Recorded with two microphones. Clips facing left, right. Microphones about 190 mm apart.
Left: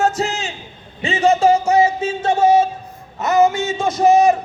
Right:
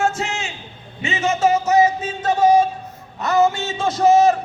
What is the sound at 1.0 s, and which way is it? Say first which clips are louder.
A man's voice: left 4 dB; 35° left (ahead or behind).